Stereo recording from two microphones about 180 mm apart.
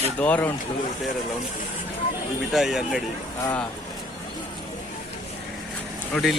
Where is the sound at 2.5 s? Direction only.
Centre (ahead or behind).